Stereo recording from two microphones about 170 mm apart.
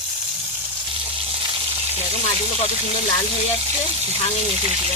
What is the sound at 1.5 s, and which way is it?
Frying, 35° right (ahead or behind).